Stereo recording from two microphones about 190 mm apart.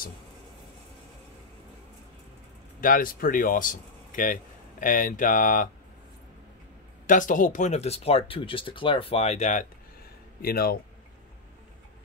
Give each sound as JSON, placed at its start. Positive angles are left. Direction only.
{"t": 2.8, "sound": "speech", "side_deg": 45}
{"t": 7.1, "sound": "speech", "side_deg": 45}
{"t": 10.4, "sound": "speech", "side_deg": 55}